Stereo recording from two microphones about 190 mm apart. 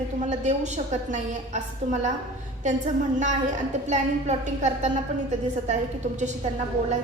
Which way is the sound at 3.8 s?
40° right (ahead or behind).